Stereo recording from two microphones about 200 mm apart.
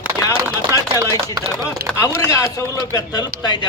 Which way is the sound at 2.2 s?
15° left (ahead or behind).